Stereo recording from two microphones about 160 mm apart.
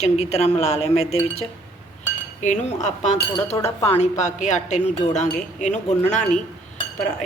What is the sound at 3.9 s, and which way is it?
Cutlery, 45° left (ahead or behind).